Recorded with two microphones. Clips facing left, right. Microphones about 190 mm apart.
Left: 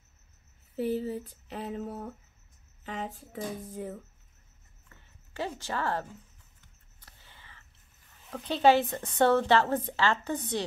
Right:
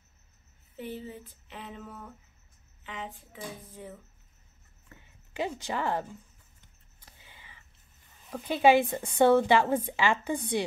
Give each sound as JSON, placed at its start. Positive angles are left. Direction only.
{"t": 0.7, "sound": "female singing", "side_deg": 40}
{"t": 5.3, "sound": "a woman's voice", "side_deg": -15}
{"t": 7.0, "sound": "a sound", "side_deg": -15}
{"t": 8.3, "sound": "a woman's voice", "side_deg": -10}